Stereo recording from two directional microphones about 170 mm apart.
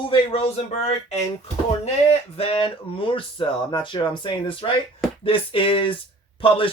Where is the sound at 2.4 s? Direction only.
35° left (ahead or behind).